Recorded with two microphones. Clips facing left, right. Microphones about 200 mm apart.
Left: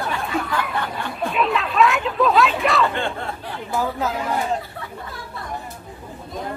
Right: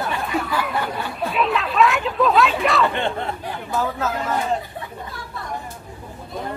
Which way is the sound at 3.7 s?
15° left (ahead or behind).